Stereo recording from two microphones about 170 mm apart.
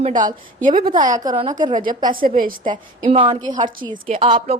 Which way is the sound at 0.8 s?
25° right (ahead or behind).